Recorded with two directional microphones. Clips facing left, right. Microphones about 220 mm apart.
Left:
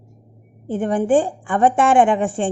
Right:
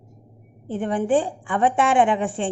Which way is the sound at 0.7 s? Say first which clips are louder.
Left 4 dB; 45° left (ahead or behind).